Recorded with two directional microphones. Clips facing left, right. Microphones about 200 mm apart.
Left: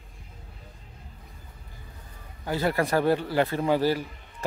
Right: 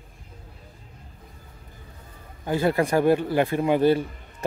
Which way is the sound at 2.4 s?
20° right (ahead or behind).